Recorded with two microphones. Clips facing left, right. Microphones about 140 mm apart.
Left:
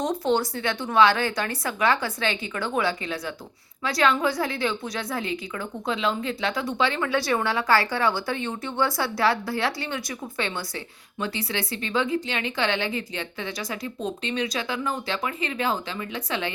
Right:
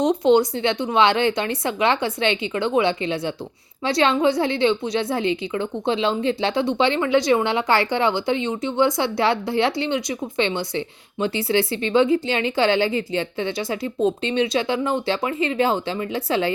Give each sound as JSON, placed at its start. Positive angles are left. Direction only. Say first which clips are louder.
{"t": 0.0, "sound": "a woman's voice", "louder": "right 7 dB", "side_deg": -20}